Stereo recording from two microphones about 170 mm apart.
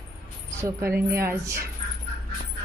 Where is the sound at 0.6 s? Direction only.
15° right (ahead or behind).